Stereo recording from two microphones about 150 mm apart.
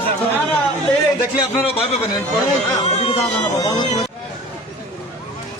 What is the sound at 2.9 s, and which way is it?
Speech, 45° left (ahead or behind).